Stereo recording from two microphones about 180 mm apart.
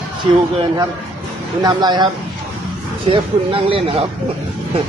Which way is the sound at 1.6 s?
20° right (ahead or behind).